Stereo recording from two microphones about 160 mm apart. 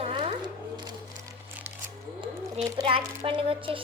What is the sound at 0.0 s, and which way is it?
Music, 35° right (ahead or behind).